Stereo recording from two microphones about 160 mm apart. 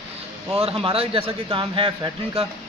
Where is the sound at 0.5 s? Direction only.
35° right (ahead or behind).